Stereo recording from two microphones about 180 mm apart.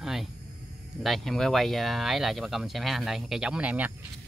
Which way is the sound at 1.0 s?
Centre (ahead or behind).